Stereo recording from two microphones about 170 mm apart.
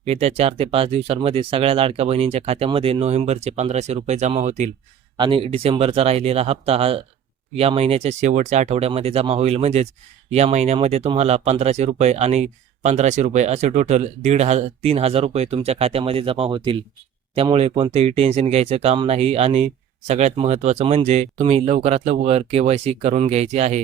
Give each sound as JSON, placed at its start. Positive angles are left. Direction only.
{"t": 0.0, "sound": "speech", "side_deg": -35}
{"t": 5.1, "sound": "speech", "side_deg": -30}